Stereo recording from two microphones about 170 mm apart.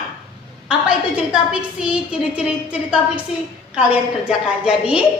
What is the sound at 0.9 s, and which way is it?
A woman's voice, 5° right (ahead or behind).